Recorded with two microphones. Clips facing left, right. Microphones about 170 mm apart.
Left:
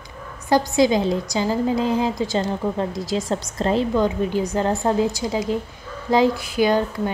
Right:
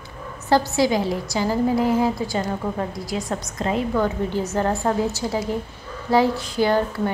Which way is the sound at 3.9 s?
20° left (ahead or behind).